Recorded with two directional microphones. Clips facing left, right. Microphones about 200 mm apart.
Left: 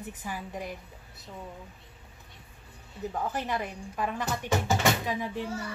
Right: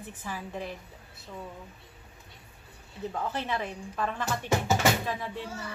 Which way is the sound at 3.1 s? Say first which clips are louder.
Left 1 dB; 10° left (ahead or behind).